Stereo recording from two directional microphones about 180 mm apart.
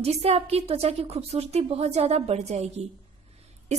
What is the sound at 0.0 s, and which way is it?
Speech, 35° right (ahead or behind).